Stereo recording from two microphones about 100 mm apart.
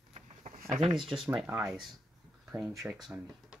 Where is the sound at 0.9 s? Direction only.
55° right (ahead or behind).